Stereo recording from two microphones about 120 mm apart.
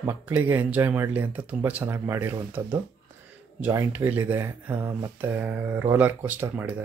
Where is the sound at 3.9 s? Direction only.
15° right (ahead or behind).